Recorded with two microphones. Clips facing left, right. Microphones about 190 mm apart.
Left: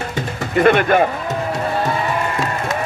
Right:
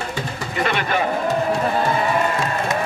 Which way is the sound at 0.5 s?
50° left (ahead or behind).